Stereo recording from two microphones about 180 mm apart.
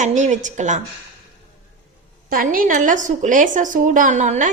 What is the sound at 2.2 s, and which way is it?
A woman's voice, 50° right (ahead or behind).